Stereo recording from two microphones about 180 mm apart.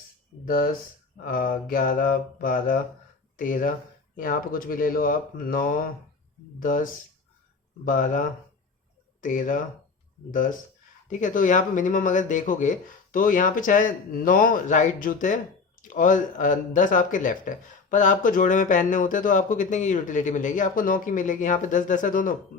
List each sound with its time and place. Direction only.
0.4 s speech: 55° left (ahead or behind)
7.9 s speech: 45° left (ahead or behind)
11.2 s speech: 45° left (ahead or behind)